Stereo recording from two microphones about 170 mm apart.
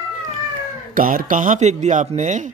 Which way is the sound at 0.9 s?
55° right (ahead or behind).